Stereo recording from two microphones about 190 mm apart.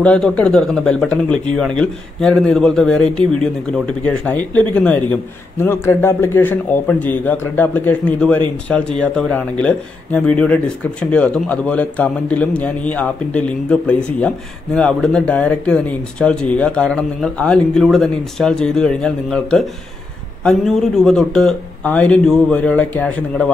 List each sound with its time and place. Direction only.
0.0 s a man's voice: 5° left (ahead or behind)